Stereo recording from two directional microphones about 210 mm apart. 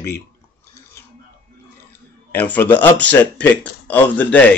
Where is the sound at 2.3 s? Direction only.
10° left (ahead or behind).